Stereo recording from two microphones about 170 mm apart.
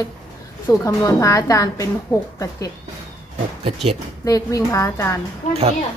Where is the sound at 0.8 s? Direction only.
20° left (ahead or behind).